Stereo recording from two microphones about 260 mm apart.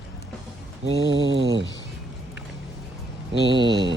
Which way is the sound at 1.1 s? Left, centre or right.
Right.